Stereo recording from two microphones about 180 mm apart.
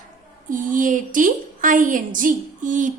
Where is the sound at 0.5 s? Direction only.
45° right (ahead or behind).